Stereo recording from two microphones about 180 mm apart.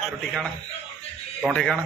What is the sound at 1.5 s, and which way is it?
Speech, 5° left (ahead or behind).